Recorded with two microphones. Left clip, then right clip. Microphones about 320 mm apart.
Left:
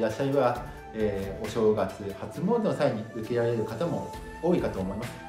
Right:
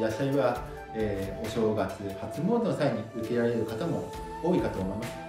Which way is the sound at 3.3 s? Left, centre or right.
Centre.